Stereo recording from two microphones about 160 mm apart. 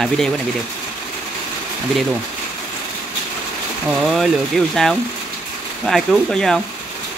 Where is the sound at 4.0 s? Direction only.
Centre (ahead or behind).